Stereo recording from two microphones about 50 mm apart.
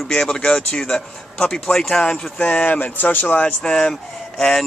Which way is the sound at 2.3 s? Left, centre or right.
Left.